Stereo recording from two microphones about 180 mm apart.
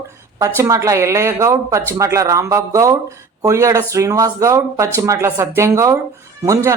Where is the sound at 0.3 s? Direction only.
15° right (ahead or behind).